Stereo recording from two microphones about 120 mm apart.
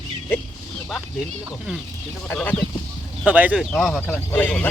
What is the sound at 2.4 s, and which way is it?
Speech, 5° left (ahead or behind).